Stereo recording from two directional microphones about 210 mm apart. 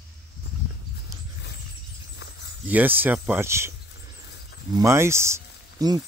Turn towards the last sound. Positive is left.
turn(degrees=-15)  # may be behind; listen again after turning